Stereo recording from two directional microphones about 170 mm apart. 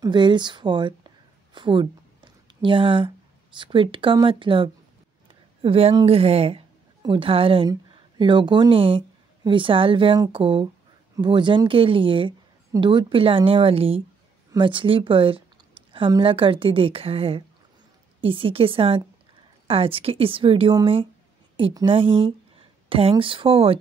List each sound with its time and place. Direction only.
0.0 s a woman's voice: 25° right (ahead or behind)